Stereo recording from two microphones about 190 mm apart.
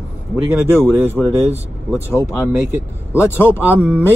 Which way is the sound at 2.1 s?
15° left (ahead or behind).